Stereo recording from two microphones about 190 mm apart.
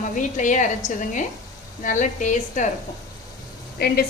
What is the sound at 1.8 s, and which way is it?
Speech, 40° left (ahead or behind).